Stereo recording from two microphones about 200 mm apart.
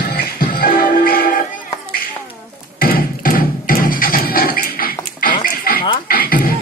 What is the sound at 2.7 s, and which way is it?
Music, 45° left (ahead or behind).